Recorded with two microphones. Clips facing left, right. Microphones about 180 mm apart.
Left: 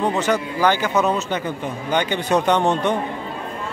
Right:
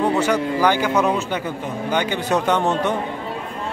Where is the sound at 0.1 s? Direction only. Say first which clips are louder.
Right 2 dB; 10° right (ahead or behind).